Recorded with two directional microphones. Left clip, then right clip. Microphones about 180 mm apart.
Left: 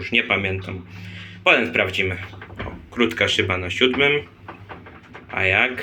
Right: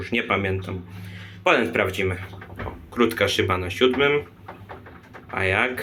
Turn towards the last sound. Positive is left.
turn(degrees=-5)  # may be behind; listen again after turning